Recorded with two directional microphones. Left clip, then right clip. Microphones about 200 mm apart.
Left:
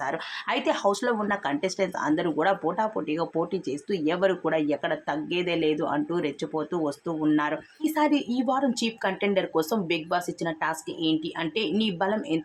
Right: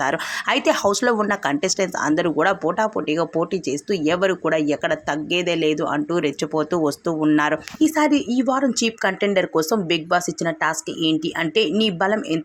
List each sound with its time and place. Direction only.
0.0 s speech: 30° right (ahead or behind)